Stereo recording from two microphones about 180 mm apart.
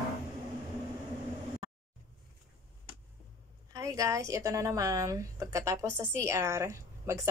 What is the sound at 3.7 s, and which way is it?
A woman's voice, 20° right (ahead or behind).